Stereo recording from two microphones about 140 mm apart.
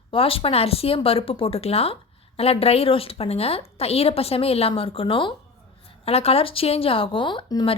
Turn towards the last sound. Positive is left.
turn(degrees=35)  # may be behind; listen again after turning